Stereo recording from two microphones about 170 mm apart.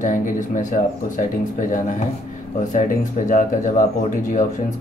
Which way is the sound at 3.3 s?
50° left (ahead or behind).